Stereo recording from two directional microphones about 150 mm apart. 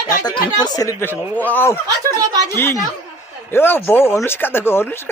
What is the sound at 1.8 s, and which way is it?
Speech, 25° right (ahead or behind).